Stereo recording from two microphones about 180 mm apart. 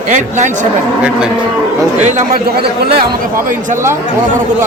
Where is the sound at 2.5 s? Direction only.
60° right (ahead or behind).